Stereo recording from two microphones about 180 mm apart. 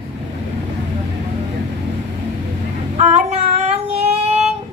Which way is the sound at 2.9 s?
40° right (ahead or behind).